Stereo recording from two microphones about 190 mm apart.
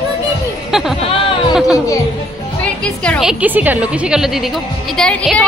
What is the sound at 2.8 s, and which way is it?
A woman's voice, 5° left (ahead or behind).